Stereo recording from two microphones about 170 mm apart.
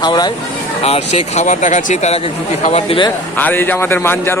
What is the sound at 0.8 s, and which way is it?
Speech, 40° left (ahead or behind).